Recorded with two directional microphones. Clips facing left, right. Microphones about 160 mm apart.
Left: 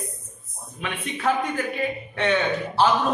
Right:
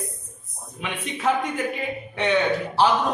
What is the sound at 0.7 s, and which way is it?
A man's voice, 20° right (ahead or behind).